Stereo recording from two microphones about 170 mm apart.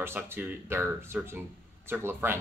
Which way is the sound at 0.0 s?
15° right (ahead or behind).